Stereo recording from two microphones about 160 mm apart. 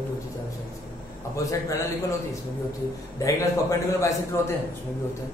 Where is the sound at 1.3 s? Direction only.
20° left (ahead or behind).